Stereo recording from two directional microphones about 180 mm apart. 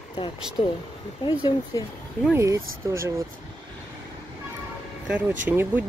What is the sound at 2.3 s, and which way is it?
Speech, 15° right (ahead or behind).